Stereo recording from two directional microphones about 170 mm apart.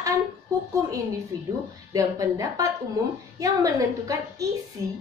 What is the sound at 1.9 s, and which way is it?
A woman's voice, 20° right (ahead or behind).